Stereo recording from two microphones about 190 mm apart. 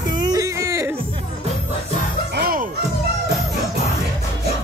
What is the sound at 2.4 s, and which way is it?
Music, 50° right (ahead or behind).